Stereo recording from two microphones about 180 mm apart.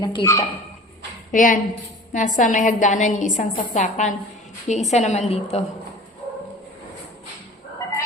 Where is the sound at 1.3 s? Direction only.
45° left (ahead or behind).